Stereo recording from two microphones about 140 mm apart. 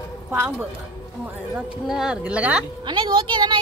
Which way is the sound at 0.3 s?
15° right (ahead or behind).